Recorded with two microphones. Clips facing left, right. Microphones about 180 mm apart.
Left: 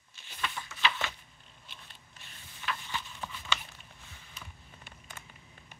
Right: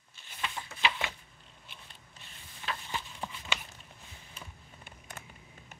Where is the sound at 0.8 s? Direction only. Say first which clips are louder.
Even; 15° right (ahead or behind).